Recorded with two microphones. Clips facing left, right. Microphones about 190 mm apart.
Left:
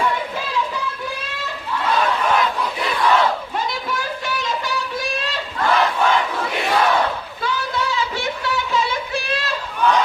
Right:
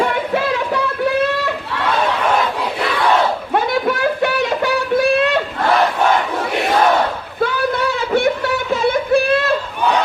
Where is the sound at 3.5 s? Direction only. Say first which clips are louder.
Right 8 dB; 60° right (ahead or behind).